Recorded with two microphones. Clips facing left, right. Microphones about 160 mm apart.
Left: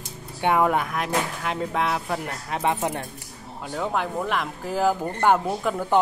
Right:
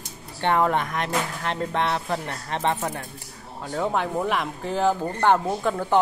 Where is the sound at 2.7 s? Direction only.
20° left (ahead or behind).